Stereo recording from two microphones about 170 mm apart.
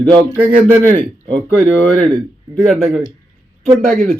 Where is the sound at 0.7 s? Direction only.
10° left (ahead or behind).